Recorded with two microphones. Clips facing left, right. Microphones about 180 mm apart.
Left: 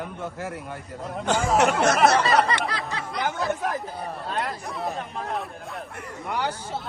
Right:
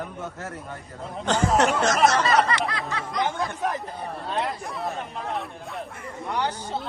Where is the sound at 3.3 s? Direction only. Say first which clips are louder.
Left 1 dB; 5° left (ahead or behind).